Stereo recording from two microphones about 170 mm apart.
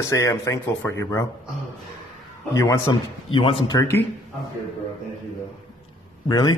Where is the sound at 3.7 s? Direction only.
15° left (ahead or behind).